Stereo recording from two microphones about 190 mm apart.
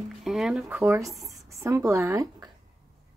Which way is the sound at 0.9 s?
15° right (ahead or behind).